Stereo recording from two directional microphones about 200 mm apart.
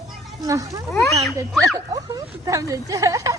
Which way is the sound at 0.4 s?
15° right (ahead or behind).